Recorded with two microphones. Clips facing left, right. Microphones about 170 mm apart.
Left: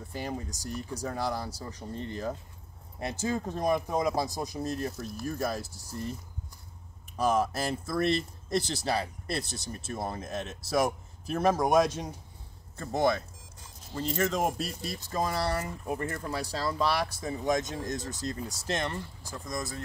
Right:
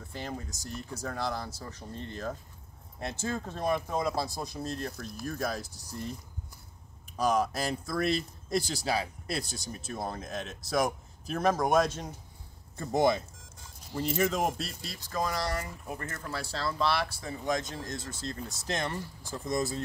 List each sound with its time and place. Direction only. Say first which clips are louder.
0.1 s speech: left 3 dB; 10° left (ahead or behind)
7.2 s speech: left 1 dB; 5° left (ahead or behind)
12.7 s speech: right 1 dB; 15° right (ahead or behind)
14.8 s speech: left 2 dB; 20° left (ahead or behind)
16.0 s speech: left 4 dB; 20° left (ahead or behind)
18.4 s speech: even; 5° left (ahead or behind)
19.4 s speech: right 6 dB; 25° right (ahead or behind)